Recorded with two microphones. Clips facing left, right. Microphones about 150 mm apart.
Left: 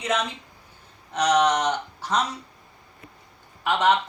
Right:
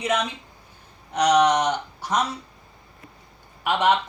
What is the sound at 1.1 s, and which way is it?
Speech, 10° right (ahead or behind).